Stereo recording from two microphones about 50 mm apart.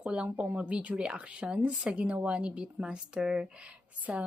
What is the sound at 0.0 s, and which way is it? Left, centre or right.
Speech, right.